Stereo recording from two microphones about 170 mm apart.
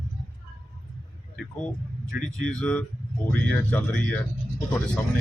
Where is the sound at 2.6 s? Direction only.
5° left (ahead or behind).